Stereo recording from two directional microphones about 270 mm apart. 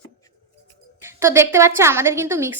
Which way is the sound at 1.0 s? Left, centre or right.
Centre.